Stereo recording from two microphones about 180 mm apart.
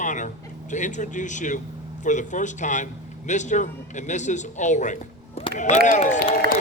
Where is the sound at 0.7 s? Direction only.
45° left (ahead or behind).